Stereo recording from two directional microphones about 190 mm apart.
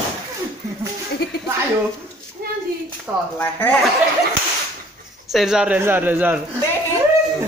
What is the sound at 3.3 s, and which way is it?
Speech, 10° left (ahead or behind).